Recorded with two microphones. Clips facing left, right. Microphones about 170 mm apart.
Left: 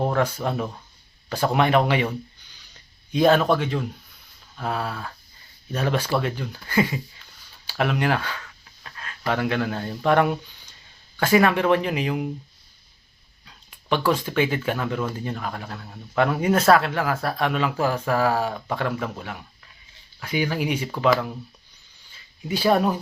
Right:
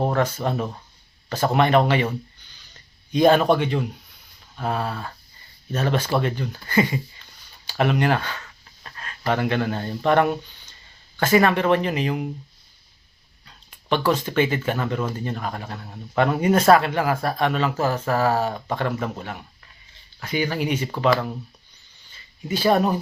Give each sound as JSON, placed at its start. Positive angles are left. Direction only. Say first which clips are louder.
{"t": 0.3, "sound": "speech", "louder": "right 1 dB", "side_deg": 0}
{"t": 3.1, "sound": "speech", "louder": "right 2 dB", "side_deg": 0}
{"t": 8.4, "sound": "a sound", "louder": "even", "side_deg": -5}
{"t": 11.2, "sound": "speech", "louder": "even", "side_deg": 10}
{"t": 13.4, "sound": "a sound", "louder": "even", "side_deg": 5}
{"t": 14.1, "sound": "speech", "louder": "right 1 dB", "side_deg": 5}
{"t": 18.2, "sound": "speech", "louder": "right 1 dB", "side_deg": 10}
{"t": 22.4, "sound": "speech", "louder": "right 1 dB", "side_deg": 10}